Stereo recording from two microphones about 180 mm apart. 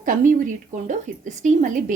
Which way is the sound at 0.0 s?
50° right (ahead or behind).